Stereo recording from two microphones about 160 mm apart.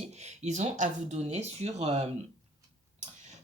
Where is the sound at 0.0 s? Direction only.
45° right (ahead or behind).